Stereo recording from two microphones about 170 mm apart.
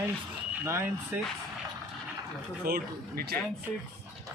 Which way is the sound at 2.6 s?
65° right (ahead or behind).